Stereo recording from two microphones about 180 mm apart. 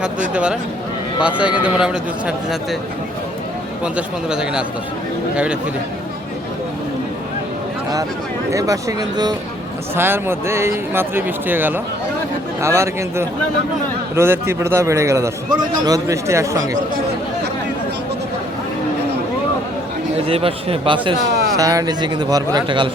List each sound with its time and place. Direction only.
1.2 s speech: 5° right (ahead or behind)
3.9 s speech: 5° right (ahead or behind)
8.4 s a man's voice: 20° right (ahead or behind)
20.2 s a man's voice: 30° right (ahead or behind)